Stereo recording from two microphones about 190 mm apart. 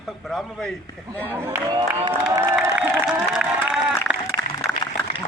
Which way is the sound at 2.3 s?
15° right (ahead or behind).